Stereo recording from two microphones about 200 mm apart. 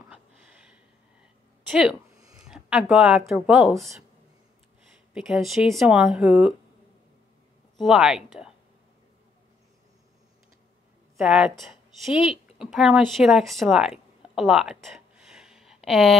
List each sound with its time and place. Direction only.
0.1 s a sound: 5° right (ahead or behind)
1.7 s speech: 5° right (ahead or behind)
2.1 s a sound: 15° right (ahead or behind)
2.4 s speech: 5° right (ahead or behind)
5.1 s speech: centre (ahead or behind)
7.8 s speech: centre (ahead or behind)
11.1 s a woman's voice: 5° right (ahead or behind)